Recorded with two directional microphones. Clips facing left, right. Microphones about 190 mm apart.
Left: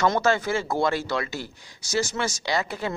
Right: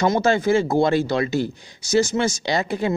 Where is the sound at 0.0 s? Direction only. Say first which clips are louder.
Right 4 dB; 20° right (ahead or behind).